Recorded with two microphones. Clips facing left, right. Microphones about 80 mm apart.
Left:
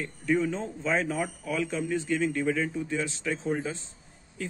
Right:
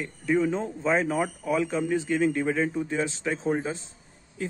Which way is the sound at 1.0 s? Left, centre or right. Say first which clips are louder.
Right 4 dB; right.